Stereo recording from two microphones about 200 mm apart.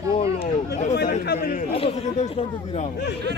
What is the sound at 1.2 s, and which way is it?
Speech, 50° left (ahead or behind).